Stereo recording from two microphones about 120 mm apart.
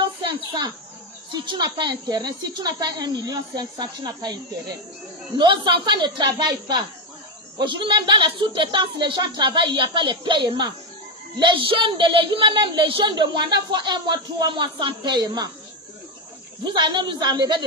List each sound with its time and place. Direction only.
0.0 s a sound: 40° right (ahead or behind)
1.3 s a woman's voice: 40° right (ahead or behind)
5.4 s a woman's voice: 40° right (ahead or behind)
16.6 s a woman's voice: 40° right (ahead or behind)